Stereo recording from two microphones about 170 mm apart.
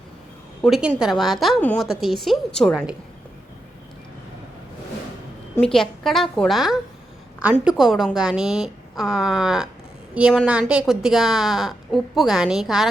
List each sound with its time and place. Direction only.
0.6 s a woman's voice: 5° right (ahead or behind)
5.5 s a woman's voice: 5° left (ahead or behind)